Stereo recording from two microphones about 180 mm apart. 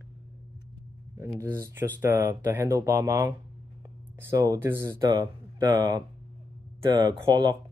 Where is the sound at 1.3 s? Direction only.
15° right (ahead or behind).